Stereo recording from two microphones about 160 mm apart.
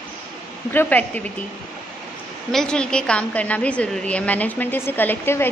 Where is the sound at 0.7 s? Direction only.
10° left (ahead or behind).